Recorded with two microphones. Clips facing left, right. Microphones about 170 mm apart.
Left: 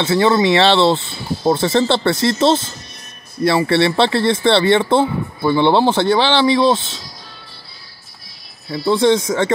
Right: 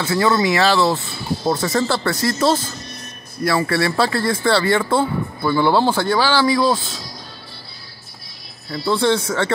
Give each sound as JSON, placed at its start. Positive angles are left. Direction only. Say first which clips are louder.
{"t": 0.0, "sound": "speech", "louder": "left 3 dB", "side_deg": 25}
{"t": 8.7, "sound": "speech", "louder": "left 4 dB", "side_deg": 20}